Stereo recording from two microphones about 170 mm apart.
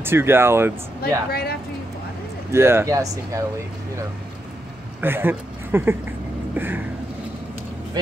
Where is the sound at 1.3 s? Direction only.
65° left (ahead or behind).